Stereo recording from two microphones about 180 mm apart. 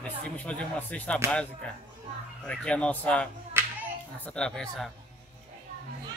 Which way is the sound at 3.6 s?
15° right (ahead or behind).